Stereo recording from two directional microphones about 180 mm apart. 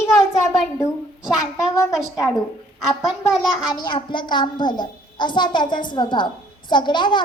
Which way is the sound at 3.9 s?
25° left (ahead or behind).